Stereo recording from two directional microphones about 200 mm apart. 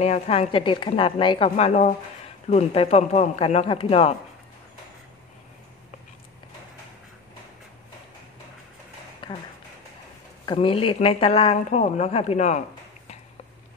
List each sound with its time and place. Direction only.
0.0 s speech: 30° left (ahead or behind)
10.4 s speech: 25° left (ahead or behind)